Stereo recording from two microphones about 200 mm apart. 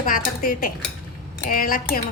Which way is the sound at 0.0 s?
45° left (ahead or behind).